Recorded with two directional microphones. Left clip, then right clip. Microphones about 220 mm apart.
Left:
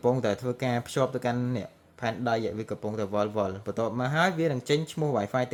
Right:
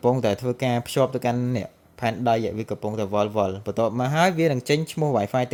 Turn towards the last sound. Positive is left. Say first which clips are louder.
# right 5 dB
turn(degrees=-25)  # may be behind; listen again after turning